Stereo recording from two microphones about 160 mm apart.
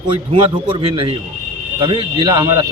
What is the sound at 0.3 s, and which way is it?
A man's voice, 35° right (ahead or behind).